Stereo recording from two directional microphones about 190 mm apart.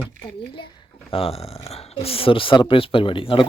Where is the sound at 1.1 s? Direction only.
30° left (ahead or behind).